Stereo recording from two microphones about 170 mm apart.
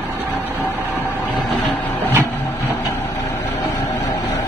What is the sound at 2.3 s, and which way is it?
Music, 15° left (ahead or behind).